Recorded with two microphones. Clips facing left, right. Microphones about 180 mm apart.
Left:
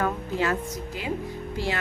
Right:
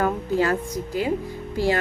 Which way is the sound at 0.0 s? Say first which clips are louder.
Right 4 dB; 40° right (ahead or behind).